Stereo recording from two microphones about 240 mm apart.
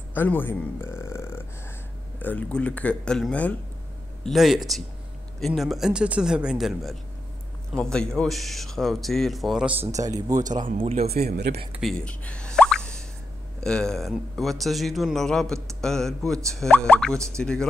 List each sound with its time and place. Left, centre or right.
0.1 s a man's voice: centre
9.8 s speech: centre
10.4 s speech: right
11.1 s speech: right
11.7 s plop: centre
13.6 s speech: centre